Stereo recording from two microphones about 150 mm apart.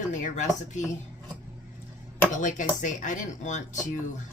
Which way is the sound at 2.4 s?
55° left (ahead or behind).